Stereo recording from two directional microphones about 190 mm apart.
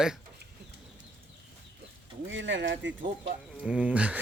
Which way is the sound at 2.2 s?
75° right (ahead or behind).